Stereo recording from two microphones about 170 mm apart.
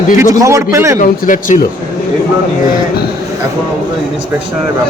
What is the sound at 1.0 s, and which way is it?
Speech, 50° left (ahead or behind).